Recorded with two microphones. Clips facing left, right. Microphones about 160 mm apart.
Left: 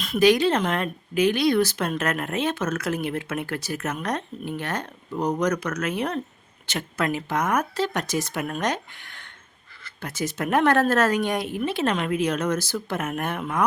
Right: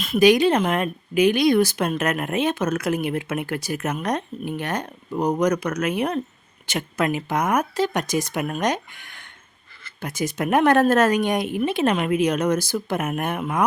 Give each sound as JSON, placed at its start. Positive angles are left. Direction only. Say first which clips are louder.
{"t": 0.2, "sound": "speech", "louder": "right 3 dB", "side_deg": -15}